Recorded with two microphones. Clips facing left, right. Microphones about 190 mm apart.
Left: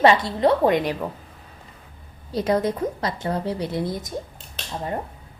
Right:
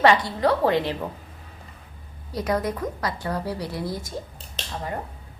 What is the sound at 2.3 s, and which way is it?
A woman's voice, 25° left (ahead or behind).